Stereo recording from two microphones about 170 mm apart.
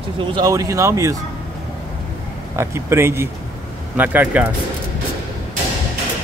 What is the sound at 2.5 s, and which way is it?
A man's voice, 15° right (ahead or behind).